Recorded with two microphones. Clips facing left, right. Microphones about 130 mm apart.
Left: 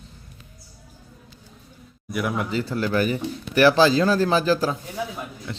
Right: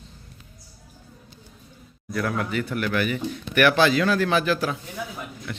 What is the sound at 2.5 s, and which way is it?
Speech, 25° left (ahead or behind).